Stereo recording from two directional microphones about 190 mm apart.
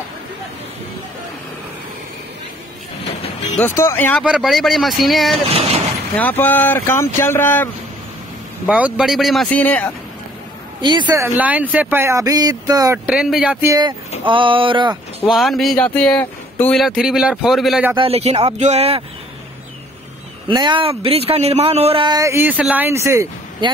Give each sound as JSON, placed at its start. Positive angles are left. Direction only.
{"t": 3.5, "sound": "speech", "side_deg": 10}
{"t": 4.2, "sound": "speech", "side_deg": 0}
{"t": 5.5, "sound": "speech", "side_deg": -30}
{"t": 6.1, "sound": "speech", "side_deg": 10}
{"t": 8.6, "sound": "speech", "side_deg": -5}
{"t": 10.8, "sound": "speech", "side_deg": -25}
{"t": 14.2, "sound": "a sound", "side_deg": -25}
{"t": 15.2, "sound": "speech", "side_deg": 0}
{"t": 17.9, "sound": "speech", "side_deg": -30}
{"t": 20.4, "sound": "speech", "side_deg": -25}